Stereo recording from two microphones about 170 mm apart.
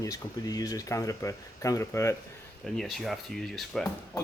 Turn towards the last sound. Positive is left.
turn(degrees=0)  # may be behind; listen again after turning